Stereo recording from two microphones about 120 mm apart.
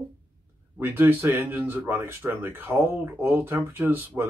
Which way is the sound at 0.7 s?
15° right (ahead or behind).